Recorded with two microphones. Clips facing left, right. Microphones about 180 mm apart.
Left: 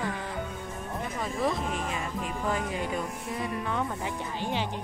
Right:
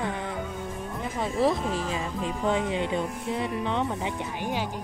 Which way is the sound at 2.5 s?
25° right (ahead or behind).